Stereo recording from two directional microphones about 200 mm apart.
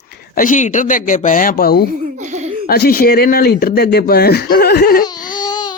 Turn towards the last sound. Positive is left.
turn(degrees=20)  # may be behind; listen again after turning